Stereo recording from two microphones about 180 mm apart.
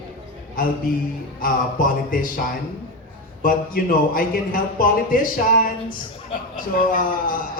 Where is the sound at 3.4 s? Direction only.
50° left (ahead or behind).